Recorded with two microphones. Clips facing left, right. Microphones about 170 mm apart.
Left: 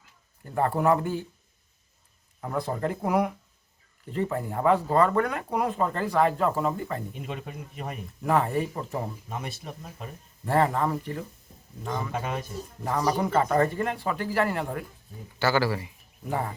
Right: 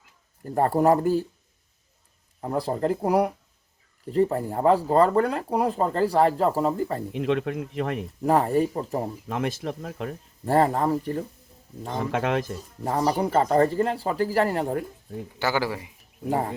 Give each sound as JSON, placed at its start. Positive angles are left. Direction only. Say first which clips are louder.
{"t": 0.4, "sound": "speech", "louder": "right 4 dB", "side_deg": -40}
{"t": 2.4, "sound": "speech", "louder": "right 4 dB", "side_deg": -30}
{"t": 7.1, "sound": "speech", "louder": "right 12 dB", "side_deg": -90}
{"t": 8.2, "sound": "speech", "louder": "right 4 dB", "side_deg": -35}
{"t": 9.2, "sound": "speech", "louder": "right 8 dB", "side_deg": -90}
{"t": 10.4, "sound": "speech", "louder": "right 3 dB", "side_deg": -35}
{"t": 12.1, "sound": "speech", "louder": "right 7 dB", "side_deg": -90}
{"t": 12.8, "sound": "speech", "louder": "right 2 dB", "side_deg": -35}
{"t": 15.4, "sound": "speech", "louder": "left 1 dB", "side_deg": -15}